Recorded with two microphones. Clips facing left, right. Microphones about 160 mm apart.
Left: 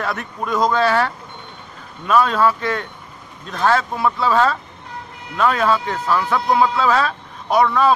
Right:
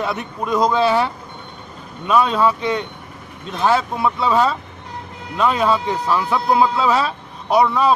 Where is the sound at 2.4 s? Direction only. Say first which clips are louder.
Right 1 dB; 20° right (ahead or behind).